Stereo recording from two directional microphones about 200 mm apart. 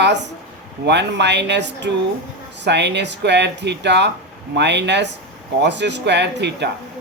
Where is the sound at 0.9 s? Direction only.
60° right (ahead or behind).